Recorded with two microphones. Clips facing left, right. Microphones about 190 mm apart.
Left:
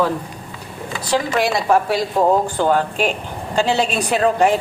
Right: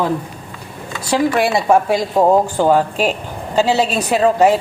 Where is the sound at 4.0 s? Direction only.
5° right (ahead or behind).